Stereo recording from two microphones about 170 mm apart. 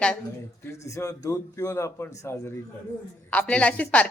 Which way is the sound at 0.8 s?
20° left (ahead or behind).